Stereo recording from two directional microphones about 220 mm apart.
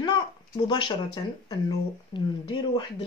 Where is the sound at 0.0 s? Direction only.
20° left (ahead or behind).